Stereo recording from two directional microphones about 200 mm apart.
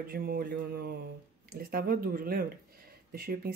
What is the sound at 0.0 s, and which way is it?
Speech, 50° right (ahead or behind).